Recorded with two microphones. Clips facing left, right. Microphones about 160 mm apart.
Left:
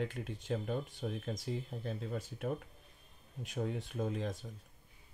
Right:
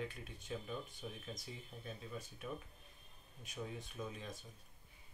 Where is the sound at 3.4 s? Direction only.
80° left.